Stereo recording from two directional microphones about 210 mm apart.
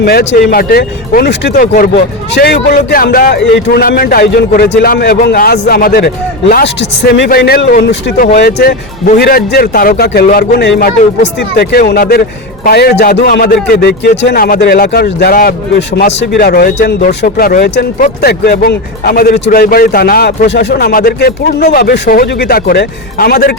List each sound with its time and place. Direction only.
0.0 s speech: 50° left (ahead or behind)